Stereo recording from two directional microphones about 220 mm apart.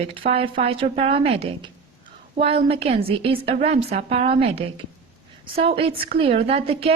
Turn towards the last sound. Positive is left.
turn(degrees=-25)  # may be behind; listen again after turning